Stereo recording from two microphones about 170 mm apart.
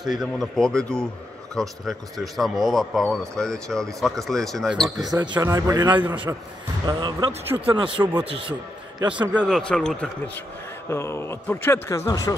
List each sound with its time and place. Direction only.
0.1 s speech: centre (ahead or behind)
5.1 s a man's voice: 25° right (ahead or behind)
6.3 s a man's voice: 10° right (ahead or behind)
6.9 s a man's voice: 25° right (ahead or behind)
8.0 s a man's voice: 10° right (ahead or behind)
8.3 s speech: 30° right (ahead or behind)
9.1 s a man's voice: 10° right (ahead or behind)
9.6 s a man's voice: 5° left (ahead or behind); by 12.4 s 20° left (ahead or behind)